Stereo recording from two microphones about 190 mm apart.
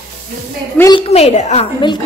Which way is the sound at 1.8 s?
25° left (ahead or behind).